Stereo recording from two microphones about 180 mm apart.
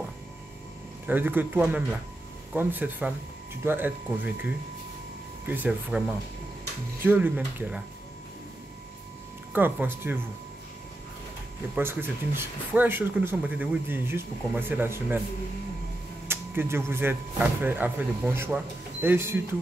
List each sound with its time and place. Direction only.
1.0 s speech: 10° right (ahead or behind)
5.5 s speech: 5° right (ahead or behind)
9.5 s speech: 10° right (ahead or behind)
11.7 s speech: 10° right (ahead or behind)
16.3 s speech: 15° right (ahead or behind)